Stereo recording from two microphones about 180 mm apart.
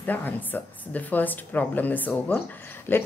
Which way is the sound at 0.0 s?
10° left (ahead or behind).